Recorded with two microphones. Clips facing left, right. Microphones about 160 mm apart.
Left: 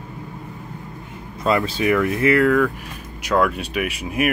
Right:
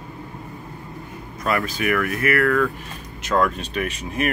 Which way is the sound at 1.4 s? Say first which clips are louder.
Left 4 dB; 25° left (ahead or behind).